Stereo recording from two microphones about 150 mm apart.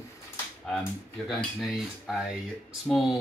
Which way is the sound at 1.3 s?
Centre (ahead or behind).